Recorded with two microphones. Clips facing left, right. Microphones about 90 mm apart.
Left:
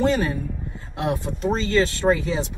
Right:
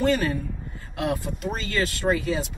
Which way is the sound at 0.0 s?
20° left (ahead or behind).